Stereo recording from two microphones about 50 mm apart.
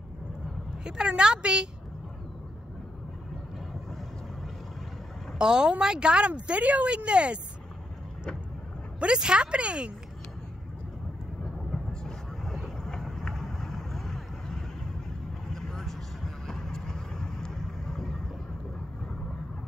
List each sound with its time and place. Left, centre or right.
0.8 s a woman's voice: centre
5.4 s speech: centre
9.0 s speech: centre
11.7 s vehicle: centre